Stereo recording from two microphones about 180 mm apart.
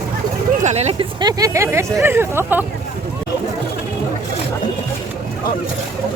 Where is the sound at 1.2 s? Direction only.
20° right (ahead or behind).